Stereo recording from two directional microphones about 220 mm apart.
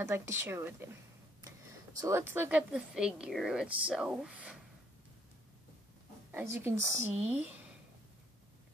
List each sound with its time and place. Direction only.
0.0 s speech: 10° right (ahead or behind)
2.0 s speech: 15° right (ahead or behind)
6.3 s speech: 10° right (ahead or behind)